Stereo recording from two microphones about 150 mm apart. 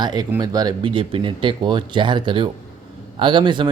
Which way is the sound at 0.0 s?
30° right (ahead or behind).